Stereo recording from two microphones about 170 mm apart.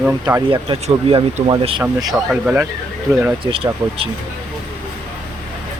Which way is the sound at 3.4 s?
35° right (ahead or behind).